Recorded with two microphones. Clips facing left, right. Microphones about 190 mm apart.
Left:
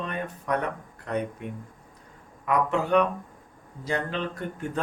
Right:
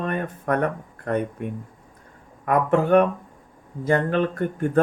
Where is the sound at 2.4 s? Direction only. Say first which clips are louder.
Right 5 dB; 50° right (ahead or behind).